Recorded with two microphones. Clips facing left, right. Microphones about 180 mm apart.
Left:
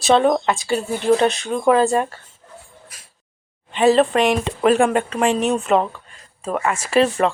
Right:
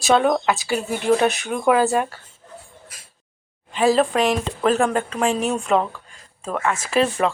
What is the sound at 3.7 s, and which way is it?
Speech, 5° right (ahead or behind).